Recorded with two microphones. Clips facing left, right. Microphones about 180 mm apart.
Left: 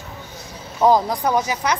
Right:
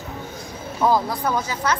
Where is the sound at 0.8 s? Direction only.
15° left (ahead or behind).